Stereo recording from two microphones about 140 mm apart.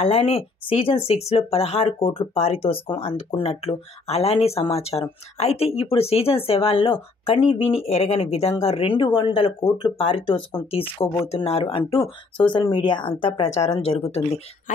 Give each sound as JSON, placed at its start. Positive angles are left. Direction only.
{"t": 0.0, "sound": "speech", "side_deg": 45}
{"t": 12.4, "sound": "speech", "side_deg": 35}